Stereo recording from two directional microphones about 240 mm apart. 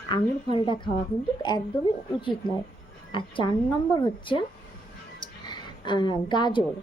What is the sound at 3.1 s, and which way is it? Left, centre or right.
A woman's voice, left.